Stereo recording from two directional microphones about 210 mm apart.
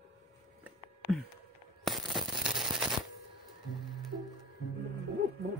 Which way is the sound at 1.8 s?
Centre (ahead or behind).